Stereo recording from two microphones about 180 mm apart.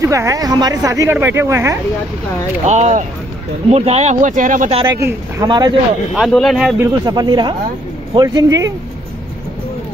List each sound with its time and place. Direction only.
0.0 s speech: 15° right (ahead or behind)
2.6 s speech: 40° right (ahead or behind)
4.8 s speech: 15° right (ahead or behind)
6.1 s speech: centre (ahead or behind)
6.8 s speech: 20° right (ahead or behind)